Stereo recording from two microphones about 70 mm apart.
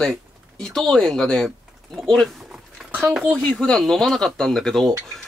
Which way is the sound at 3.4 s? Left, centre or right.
Centre.